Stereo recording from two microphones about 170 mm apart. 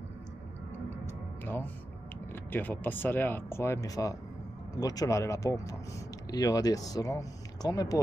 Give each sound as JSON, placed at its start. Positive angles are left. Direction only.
{"t": 1.4, "sound": "speech", "side_deg": 10}